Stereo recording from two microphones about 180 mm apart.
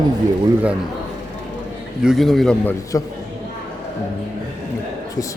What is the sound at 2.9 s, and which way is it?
Speech, 20° left (ahead or behind).